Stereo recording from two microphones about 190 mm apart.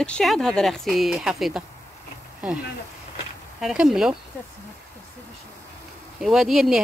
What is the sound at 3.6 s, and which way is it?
Speech, centre (ahead or behind).